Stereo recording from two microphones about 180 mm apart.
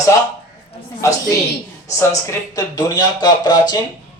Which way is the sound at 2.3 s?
20° left (ahead or behind).